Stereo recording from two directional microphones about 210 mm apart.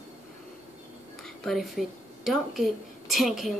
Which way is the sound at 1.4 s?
Centre (ahead or behind).